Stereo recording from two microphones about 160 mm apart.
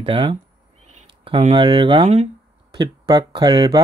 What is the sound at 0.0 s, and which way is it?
Speech, 30° right (ahead or behind).